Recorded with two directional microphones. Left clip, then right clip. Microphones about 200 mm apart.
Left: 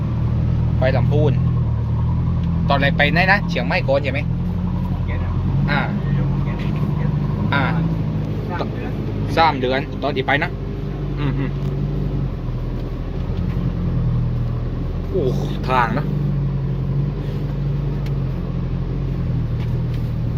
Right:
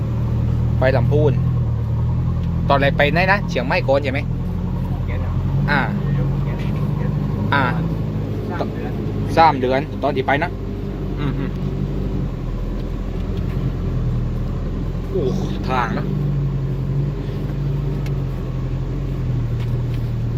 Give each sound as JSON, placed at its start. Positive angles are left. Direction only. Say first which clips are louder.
{"t": 0.8, "sound": "speech", "louder": "right 2 dB", "side_deg": -20}
{"t": 1.1, "sound": "speech", "louder": "right 2 dB", "side_deg": -5}
{"t": 2.6, "sound": "speech", "louder": "right 2 dB", "side_deg": -15}
{"t": 5.6, "sound": "speech", "louder": "right 3 dB", "side_deg": -20}
{"t": 7.5, "sound": "speech", "louder": "right 2 dB", "side_deg": -15}
{"t": 9.3, "sound": "speech", "louder": "right 2 dB", "side_deg": -10}
{"t": 15.3, "sound": "speech", "louder": "left 2 dB", "side_deg": 25}